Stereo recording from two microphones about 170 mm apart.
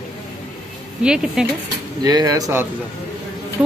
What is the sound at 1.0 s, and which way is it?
Speech, 5° right (ahead or behind).